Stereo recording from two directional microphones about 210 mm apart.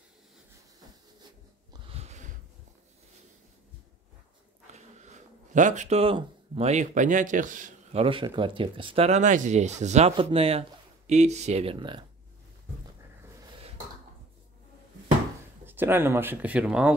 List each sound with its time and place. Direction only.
1.7 s a sound: 30° right (ahead or behind)
4.7 s speech: 35° right (ahead or behind)
15.6 s speech: 10° right (ahead or behind)